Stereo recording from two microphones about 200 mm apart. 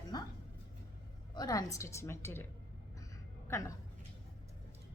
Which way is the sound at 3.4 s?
15° left (ahead or behind).